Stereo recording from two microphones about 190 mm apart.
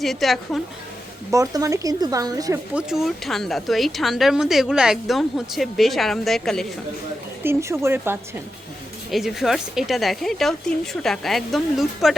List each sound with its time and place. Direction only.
0.0 s speech: centre (ahead or behind)
1.3 s speech: 15° right (ahead or behind)
2.7 s speech: centre (ahead or behind)
7.4 s speech: 15° right (ahead or behind)
9.0 s speech: centre (ahead or behind)